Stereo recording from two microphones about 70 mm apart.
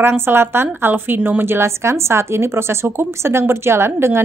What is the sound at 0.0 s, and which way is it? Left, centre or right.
Speech, right.